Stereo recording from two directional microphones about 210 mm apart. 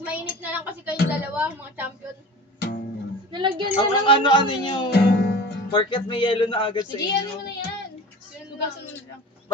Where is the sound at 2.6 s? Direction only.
50° left (ahead or behind).